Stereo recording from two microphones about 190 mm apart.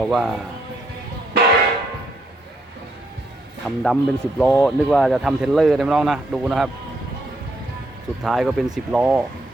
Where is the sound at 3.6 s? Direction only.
Centre (ahead or behind).